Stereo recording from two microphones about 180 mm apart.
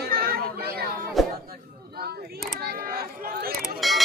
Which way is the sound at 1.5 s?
60° right (ahead or behind).